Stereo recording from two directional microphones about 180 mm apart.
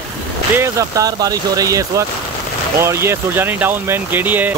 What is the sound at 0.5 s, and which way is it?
Speech, 15° right (ahead or behind).